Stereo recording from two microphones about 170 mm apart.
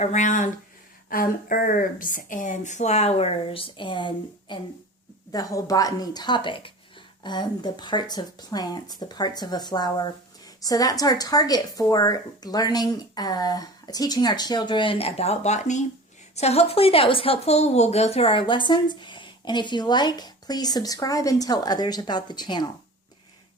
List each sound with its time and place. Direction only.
0.0 s speech: 45° left (ahead or behind); by 22.6 s 25° left (ahead or behind)